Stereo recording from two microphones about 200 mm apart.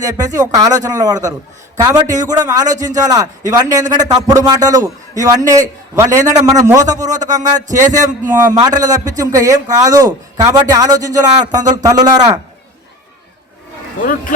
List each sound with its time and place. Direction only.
0.0 s a man's voice: 15° right (ahead or behind)
7.1 s speech: 40° right (ahead or behind)
8.4 s a man's voice: 20° right (ahead or behind)
14.0 s speech: 45° left (ahead or behind)